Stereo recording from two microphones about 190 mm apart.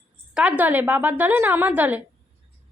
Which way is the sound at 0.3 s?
5° right (ahead or behind).